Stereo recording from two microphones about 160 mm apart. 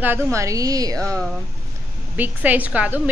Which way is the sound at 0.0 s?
15° right (ahead or behind).